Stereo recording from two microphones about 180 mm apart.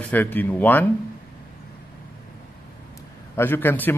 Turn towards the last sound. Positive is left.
turn(degrees=10)  # may be behind; listen again after turning